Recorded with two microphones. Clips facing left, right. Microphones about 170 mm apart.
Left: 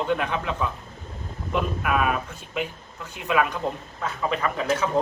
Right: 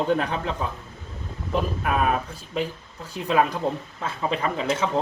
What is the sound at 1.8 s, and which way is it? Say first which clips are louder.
Speech: right 1 dB; 35° right (ahead or behind).